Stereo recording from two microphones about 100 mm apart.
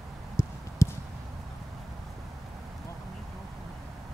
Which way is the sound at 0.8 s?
30° left (ahead or behind).